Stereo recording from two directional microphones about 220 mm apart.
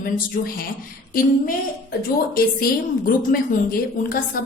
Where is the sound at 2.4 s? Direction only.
40° left (ahead or behind).